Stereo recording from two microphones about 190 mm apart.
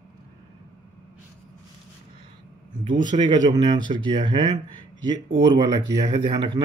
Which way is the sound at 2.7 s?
25° right (ahead or behind).